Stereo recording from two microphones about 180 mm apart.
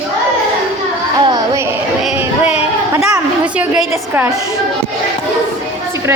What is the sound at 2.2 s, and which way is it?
A woman's voice, 10° right (ahead or behind).